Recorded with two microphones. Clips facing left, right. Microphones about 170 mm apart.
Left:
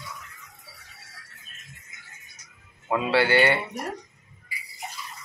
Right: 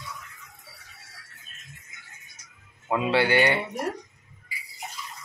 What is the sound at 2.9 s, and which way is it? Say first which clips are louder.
Speech: left 1 dB; 15° right (ahead or behind).